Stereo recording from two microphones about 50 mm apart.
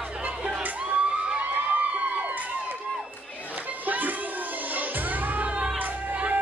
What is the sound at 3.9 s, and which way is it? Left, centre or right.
Children playing, right.